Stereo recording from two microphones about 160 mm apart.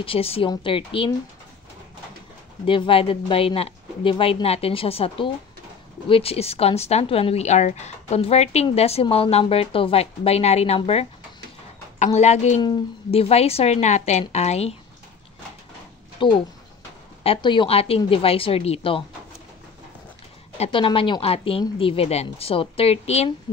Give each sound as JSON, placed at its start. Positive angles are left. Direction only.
{"t": 0.0, "sound": "a woman's voice", "side_deg": 35}
{"t": 2.6, "sound": "a woman's voice", "side_deg": 35}
{"t": 16.2, "sound": "a woman's voice", "side_deg": 30}
{"t": 20.5, "sound": "a woman's voice", "side_deg": 35}